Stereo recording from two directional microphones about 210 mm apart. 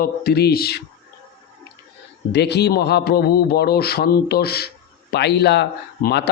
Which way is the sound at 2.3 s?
50° left (ahead or behind).